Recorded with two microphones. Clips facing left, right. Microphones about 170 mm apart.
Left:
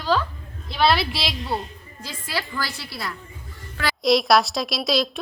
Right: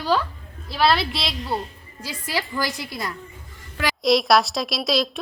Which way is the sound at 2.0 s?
15° right (ahead or behind).